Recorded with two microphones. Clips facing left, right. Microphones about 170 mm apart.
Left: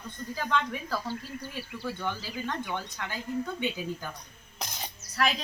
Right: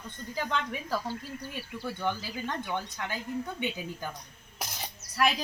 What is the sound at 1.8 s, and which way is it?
A woman's voice, 15° right (ahead or behind).